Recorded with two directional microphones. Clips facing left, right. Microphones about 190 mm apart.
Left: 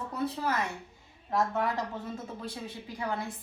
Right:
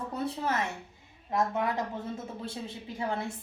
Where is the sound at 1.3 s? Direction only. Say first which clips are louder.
Even; 20° right (ahead or behind).